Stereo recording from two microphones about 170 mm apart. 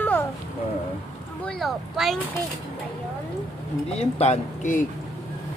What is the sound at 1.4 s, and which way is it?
Speech, centre (ahead or behind).